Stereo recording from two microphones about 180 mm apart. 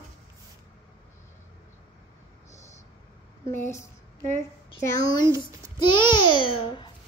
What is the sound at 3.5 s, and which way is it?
Speech, 15° left (ahead or behind).